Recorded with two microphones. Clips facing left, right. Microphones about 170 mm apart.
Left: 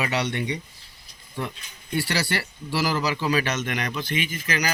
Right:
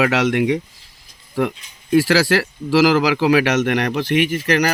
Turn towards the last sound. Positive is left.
turn(degrees=-70)  # may be behind; listen again after turning